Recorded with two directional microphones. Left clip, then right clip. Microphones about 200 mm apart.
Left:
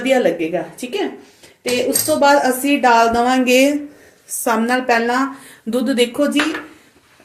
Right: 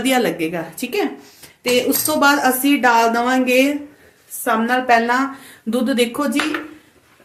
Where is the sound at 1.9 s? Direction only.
30° right (ahead or behind).